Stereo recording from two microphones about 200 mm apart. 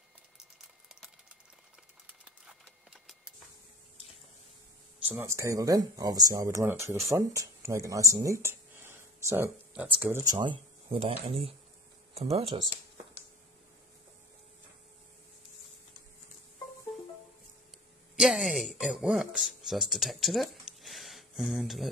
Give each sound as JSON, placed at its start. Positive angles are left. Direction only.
{"t": 2.0, "sound": "a sound", "side_deg": -5}
{"t": 5.0, "sound": "speech", "side_deg": -10}
{"t": 18.1, "sound": "speech", "side_deg": 0}